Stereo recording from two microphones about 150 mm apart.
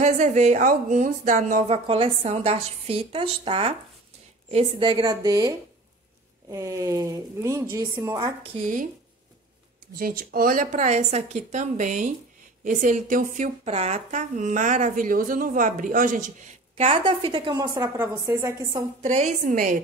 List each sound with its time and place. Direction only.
0.0 s speech: 50° right (ahead or behind)
4.8 s speech: 30° right (ahead or behind)
6.5 s speech: 20° right (ahead or behind)
8.5 s speech: 60° right (ahead or behind)
9.9 s speech: 70° right (ahead or behind); by 17.8 s 30° right (ahead or behind)
17.9 s speech: 20° right (ahead or behind)
19.0 s speech: 55° right (ahead or behind)